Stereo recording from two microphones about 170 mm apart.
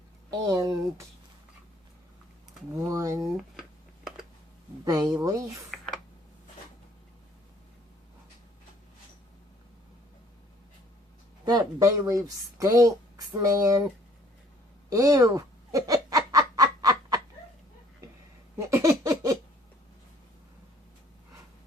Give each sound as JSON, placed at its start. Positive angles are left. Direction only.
{"t": 0.3, "sound": "speech", "side_deg": -20}
{"t": 2.8, "sound": "speech", "side_deg": -20}
{"t": 3.5, "sound": "a sound", "side_deg": 0}
{"t": 4.9, "sound": "a woman's voice", "side_deg": -20}
{"t": 11.4, "sound": "a woman's voice", "side_deg": -20}
{"t": 14.8, "sound": "fowl", "side_deg": -20}
{"t": 18.5, "sound": "a sound", "side_deg": -15}